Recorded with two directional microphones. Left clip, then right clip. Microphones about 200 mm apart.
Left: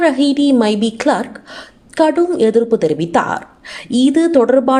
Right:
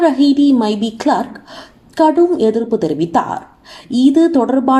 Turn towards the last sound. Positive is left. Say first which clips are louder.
# left 4 dB
turn(degrees=40)  # may be behind; listen again after turning